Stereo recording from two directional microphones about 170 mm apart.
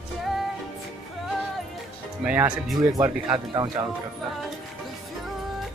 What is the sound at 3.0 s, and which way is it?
Speech, 20° right (ahead or behind).